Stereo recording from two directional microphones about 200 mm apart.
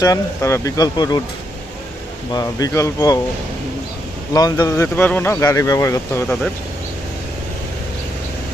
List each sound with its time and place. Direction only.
0.0 s speech: 15° left (ahead or behind)
2.3 s speech: 20° left (ahead or behind)
4.4 s speech: 20° left (ahead or behind)